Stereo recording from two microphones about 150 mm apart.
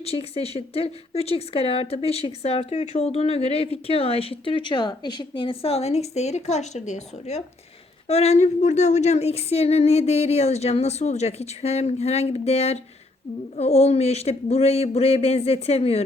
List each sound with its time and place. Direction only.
0.0 s a woman's voice: 40° left (ahead or behind)